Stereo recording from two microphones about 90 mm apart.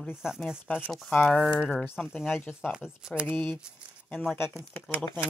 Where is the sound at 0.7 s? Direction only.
20° left (ahead or behind).